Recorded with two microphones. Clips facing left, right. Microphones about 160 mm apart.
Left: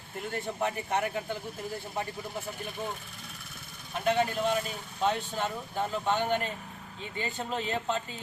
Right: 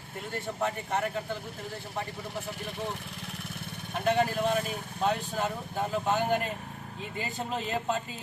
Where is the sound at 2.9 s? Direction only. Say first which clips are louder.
Right 4 dB; 70° right (ahead or behind).